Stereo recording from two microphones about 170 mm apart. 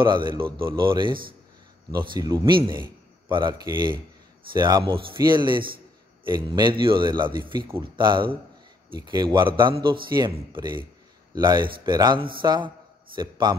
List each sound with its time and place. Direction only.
0.0 s a man's voice: 30° right (ahead or behind)